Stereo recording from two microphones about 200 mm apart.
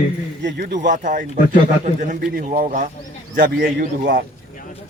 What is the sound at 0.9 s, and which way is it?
A man's voice, 40° right (ahead or behind).